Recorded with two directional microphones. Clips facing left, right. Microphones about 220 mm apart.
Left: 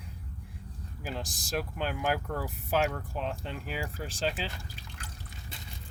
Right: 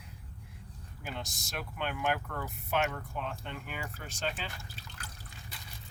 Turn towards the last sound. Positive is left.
turn(degrees=30)  # may be behind; listen again after turning